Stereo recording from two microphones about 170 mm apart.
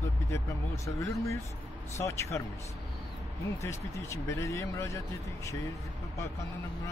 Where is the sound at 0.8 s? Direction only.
20° left (ahead or behind).